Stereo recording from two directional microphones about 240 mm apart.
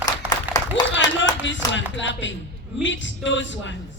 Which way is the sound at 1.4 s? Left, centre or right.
Left.